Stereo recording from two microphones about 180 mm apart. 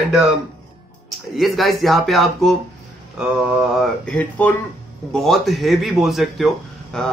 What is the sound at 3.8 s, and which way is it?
Speech, 5° left (ahead or behind).